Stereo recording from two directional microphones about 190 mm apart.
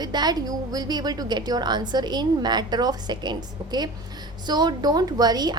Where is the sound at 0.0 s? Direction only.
20° right (ahead or behind).